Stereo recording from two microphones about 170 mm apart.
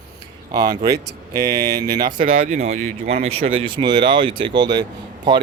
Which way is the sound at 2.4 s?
40° right (ahead or behind).